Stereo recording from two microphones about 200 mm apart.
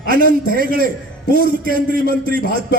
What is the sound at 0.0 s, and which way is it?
Speech, 45° right (ahead or behind).